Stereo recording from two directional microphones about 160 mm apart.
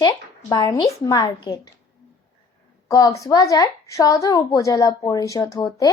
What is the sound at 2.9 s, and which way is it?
A woman's voice, 20° left (ahead or behind).